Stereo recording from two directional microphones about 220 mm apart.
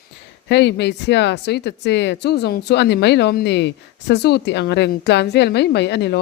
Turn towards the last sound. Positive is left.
turn(degrees=50)  # may be behind; listen again after turning